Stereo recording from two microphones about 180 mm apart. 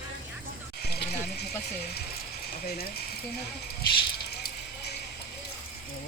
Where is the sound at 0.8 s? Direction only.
65° left (ahead or behind).